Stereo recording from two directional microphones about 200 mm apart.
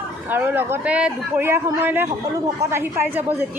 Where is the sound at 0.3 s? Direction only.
10° right (ahead or behind).